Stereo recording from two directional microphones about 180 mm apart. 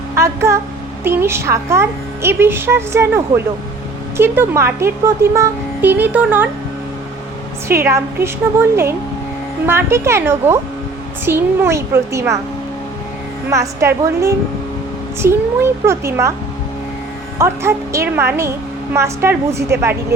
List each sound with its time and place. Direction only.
0.2 s a woman's voice: 15° right (ahead or behind)
7.9 s speech: 15° right (ahead or behind)
13.5 s speech: 15° right (ahead or behind)
17.3 s speech: 15° right (ahead or behind)